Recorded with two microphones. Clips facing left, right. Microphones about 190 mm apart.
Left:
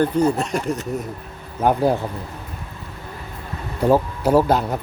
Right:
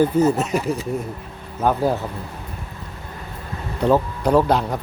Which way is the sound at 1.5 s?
15° left (ahead or behind).